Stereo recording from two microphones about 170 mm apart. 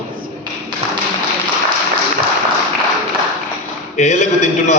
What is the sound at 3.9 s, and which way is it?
Speech, 45° left (ahead or behind).